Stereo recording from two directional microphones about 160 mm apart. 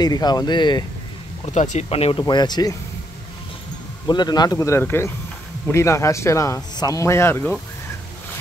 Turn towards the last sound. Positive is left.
turn(degrees=15)  # may be behind; listen again after turning